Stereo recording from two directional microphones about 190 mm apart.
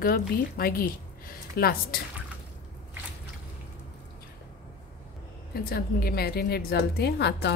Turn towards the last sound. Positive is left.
turn(degrees=60)  # may be behind; listen again after turning